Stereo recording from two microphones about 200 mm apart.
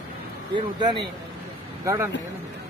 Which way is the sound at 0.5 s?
25° right (ahead or behind).